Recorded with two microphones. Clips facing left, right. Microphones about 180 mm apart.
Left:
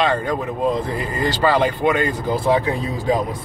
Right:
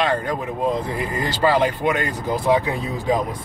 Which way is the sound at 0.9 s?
10° right (ahead or behind).